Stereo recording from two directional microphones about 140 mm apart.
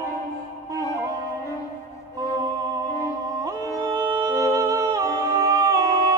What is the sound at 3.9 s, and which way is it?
Humming, 20° right (ahead or behind).